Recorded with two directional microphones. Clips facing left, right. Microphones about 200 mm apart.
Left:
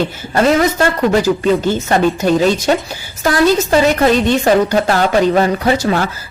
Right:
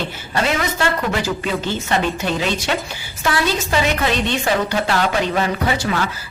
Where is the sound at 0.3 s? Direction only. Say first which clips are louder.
Left 8 dB; 45° left (ahead or behind).